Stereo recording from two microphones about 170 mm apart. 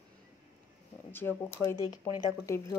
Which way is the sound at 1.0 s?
10° left (ahead or behind).